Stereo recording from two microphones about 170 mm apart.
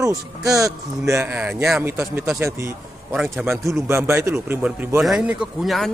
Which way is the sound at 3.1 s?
Centre (ahead or behind).